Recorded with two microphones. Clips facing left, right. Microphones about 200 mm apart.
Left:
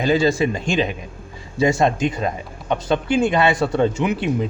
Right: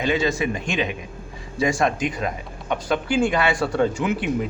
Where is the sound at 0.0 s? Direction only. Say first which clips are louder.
Left 4 dB; 35° left (ahead or behind).